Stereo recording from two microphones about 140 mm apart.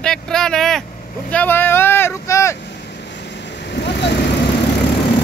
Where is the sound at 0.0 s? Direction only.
5° left (ahead or behind); by 2.5 s 20° left (ahead or behind).